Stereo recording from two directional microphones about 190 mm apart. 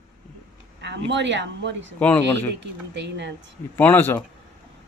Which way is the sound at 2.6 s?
65° right (ahead or behind).